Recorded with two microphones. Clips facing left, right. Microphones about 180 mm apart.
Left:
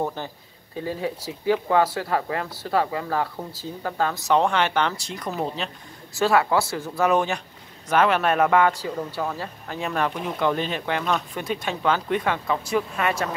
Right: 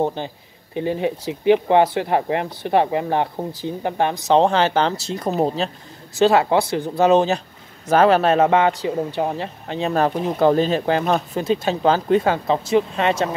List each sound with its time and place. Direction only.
0.0 s speech: 20° right (ahead or behind)